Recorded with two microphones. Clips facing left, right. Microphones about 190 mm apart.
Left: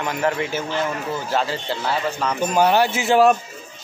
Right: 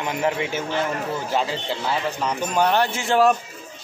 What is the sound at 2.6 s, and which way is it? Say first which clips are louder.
Speech: left 3 dB; 5° left (ahead or behind).